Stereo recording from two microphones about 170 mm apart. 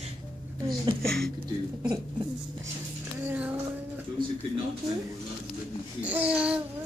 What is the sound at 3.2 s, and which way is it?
Music, 5° right (ahead or behind).